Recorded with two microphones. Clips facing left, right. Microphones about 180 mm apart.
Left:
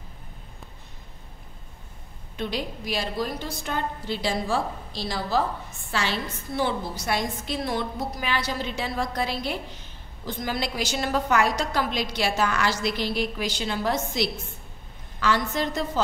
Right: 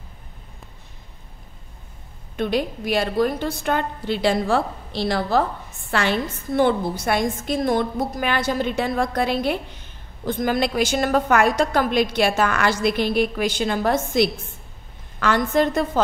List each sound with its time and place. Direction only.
2.3 s a woman's voice: 55° right (ahead or behind)